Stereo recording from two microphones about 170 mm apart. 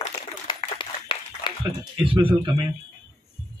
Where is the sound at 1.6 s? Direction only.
30° right (ahead or behind).